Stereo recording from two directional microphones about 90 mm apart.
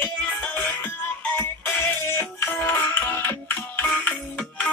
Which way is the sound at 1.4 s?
25° left (ahead or behind).